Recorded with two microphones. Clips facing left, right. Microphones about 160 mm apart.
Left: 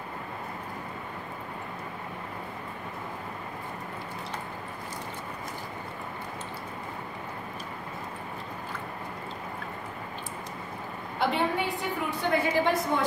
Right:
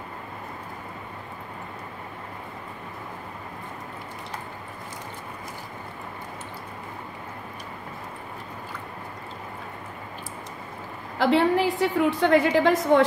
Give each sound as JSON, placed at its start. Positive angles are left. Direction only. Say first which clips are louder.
{"t": 11.1, "sound": "a woman's voice", "louder": "right 7 dB", "side_deg": -90}